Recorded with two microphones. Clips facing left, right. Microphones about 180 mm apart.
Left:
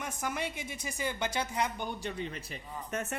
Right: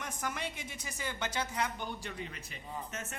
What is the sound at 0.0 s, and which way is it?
A woman's voice, 10° left (ahead or behind).